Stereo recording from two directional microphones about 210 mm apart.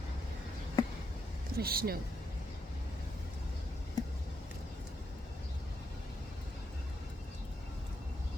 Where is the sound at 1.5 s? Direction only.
45° right (ahead or behind).